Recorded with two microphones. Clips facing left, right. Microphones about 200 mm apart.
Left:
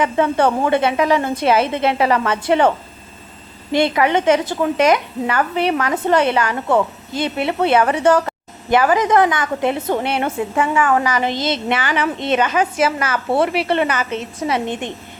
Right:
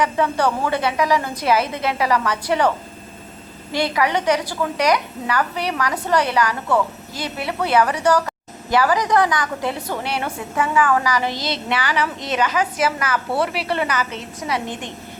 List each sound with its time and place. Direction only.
0.0 s a woman's voice: 25° left (ahead or behind)